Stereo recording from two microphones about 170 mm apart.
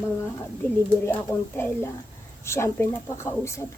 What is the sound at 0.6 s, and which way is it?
Speech, 10° left (ahead or behind).